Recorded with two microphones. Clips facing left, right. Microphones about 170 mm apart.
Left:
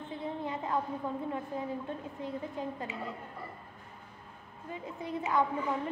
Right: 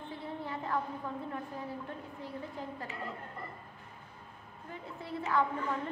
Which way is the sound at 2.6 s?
20° left (ahead or behind).